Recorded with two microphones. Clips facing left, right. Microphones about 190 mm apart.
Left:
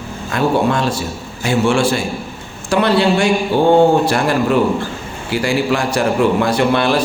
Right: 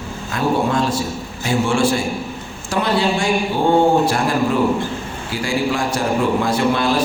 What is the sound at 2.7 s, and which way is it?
Speech, 70° left (ahead or behind).